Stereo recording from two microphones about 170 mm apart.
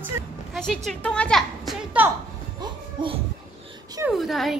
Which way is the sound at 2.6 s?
30° right (ahead or behind).